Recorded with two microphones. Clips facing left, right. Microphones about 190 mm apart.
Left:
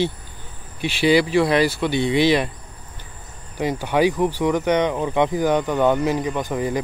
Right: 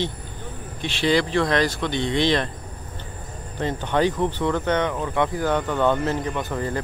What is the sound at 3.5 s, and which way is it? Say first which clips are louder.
Speech: left 3 dB; 10° left (ahead or behind).